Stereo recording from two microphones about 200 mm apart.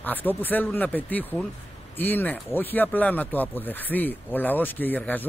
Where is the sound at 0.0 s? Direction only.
10° left (ahead or behind).